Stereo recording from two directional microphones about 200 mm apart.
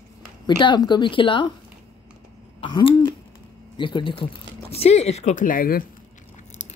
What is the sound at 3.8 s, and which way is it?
Speech, 25° left (ahead or behind).